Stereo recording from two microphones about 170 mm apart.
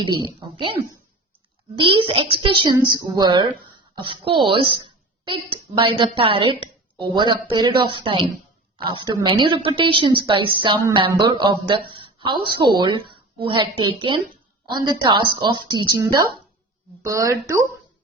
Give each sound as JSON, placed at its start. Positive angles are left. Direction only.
{"t": 0.0, "sound": "a child's voice", "side_deg": -25}
{"t": 17.1, "sound": "a child's voice", "side_deg": -20}